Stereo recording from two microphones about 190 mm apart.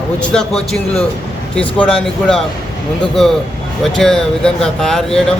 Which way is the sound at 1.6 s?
30° left (ahead or behind).